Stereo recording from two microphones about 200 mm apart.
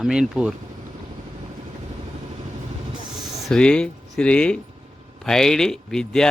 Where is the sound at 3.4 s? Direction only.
5° left (ahead or behind).